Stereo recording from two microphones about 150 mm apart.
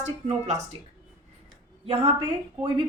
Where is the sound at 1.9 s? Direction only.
45° right (ahead or behind).